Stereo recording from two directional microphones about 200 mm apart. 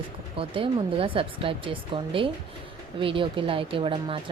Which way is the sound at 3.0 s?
25° right (ahead or behind).